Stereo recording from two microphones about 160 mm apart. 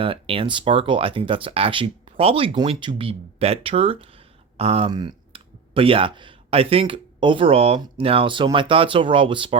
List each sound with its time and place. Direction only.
0.0 s speech: 35° right (ahead or behind)
4.9 s speech: 25° right (ahead or behind)